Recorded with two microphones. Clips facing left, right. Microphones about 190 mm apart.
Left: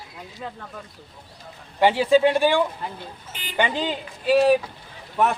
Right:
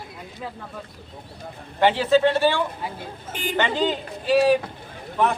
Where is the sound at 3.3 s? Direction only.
50° right (ahead or behind).